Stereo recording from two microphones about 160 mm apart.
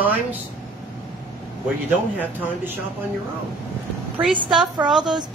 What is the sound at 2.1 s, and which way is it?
Speech, 10° right (ahead or behind).